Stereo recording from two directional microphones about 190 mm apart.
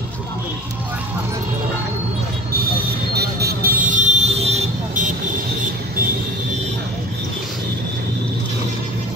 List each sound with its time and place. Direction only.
3.2 s vehicle: 55° right (ahead or behind); by 5.1 s 40° right (ahead or behind)